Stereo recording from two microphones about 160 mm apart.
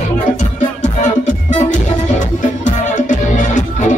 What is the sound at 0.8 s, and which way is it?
Music, 50° left (ahead or behind).